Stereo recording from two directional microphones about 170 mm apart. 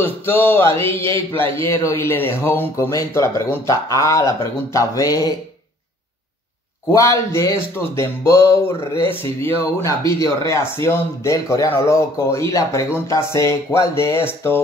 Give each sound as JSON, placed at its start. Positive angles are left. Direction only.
{"t": 0.0, "sound": "speech", "side_deg": 15}
{"t": 6.9, "sound": "speech", "side_deg": 15}